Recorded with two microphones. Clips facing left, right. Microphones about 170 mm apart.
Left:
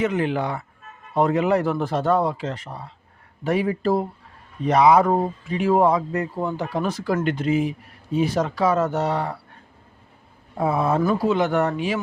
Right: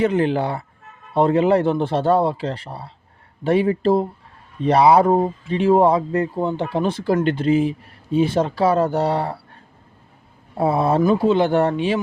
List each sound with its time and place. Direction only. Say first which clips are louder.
0.0 s speech: right 4 dB; 30° right (ahead or behind)
10.6 s speech: right 3 dB; 30° right (ahead or behind)